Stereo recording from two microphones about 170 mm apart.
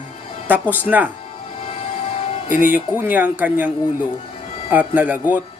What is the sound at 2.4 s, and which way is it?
Speech, 50° left (ahead or behind).